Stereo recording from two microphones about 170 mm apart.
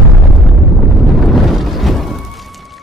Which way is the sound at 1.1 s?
Centre (ahead or behind).